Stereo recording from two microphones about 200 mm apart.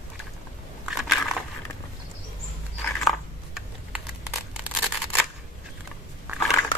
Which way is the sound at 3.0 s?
Centre (ahead or behind).